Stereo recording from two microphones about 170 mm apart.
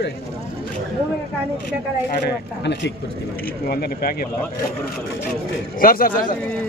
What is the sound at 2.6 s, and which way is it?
Speech, 90° left.